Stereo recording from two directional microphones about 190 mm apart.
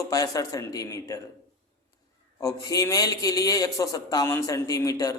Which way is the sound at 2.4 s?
20° left (ahead or behind).